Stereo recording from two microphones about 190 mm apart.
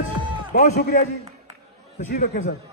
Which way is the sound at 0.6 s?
50° left (ahead or behind).